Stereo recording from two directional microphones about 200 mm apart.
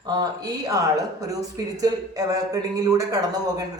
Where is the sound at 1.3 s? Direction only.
15° right (ahead or behind).